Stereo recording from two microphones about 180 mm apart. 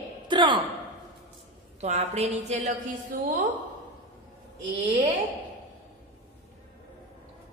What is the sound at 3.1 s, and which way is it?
Speech, 50° right (ahead or behind).